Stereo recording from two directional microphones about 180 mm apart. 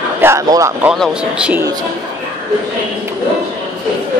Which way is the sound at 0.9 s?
5° right (ahead or behind).